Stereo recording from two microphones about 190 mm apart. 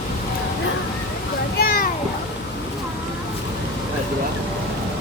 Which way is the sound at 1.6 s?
50° left (ahead or behind).